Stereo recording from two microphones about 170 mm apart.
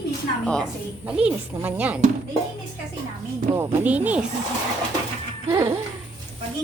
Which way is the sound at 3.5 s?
15° right (ahead or behind).